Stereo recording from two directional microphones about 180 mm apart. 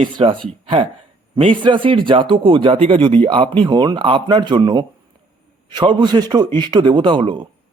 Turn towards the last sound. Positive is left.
turn(degrees=-30)  # may be behind; listen again after turning